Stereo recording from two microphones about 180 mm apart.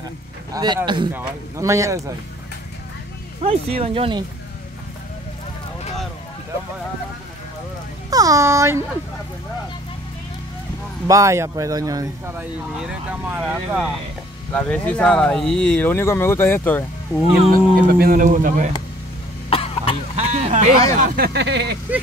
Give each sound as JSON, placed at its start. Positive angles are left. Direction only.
{"t": 0.5, "sound": "speech", "side_deg": -20}
{"t": 3.4, "sound": "speech", "side_deg": -35}
{"t": 8.1, "sound": "speech", "side_deg": -20}
{"t": 11.1, "sound": "speech", "side_deg": -15}
{"t": 12.4, "sound": "speech", "side_deg": -5}
{"t": 14.5, "sound": "speech", "side_deg": 5}
{"t": 17.4, "sound": "speech", "side_deg": -50}
{"t": 19.5, "sound": "cough", "side_deg": 30}
{"t": 20.2, "sound": "a sound", "side_deg": -35}
{"t": 21.0, "sound": "speech", "side_deg": -60}